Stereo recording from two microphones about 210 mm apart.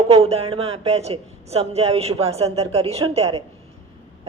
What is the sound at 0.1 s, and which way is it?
Speech, 30° right (ahead or behind).